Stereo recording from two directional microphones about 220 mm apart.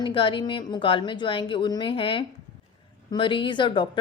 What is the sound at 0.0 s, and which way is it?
A woman's voice, 25° left (ahead or behind).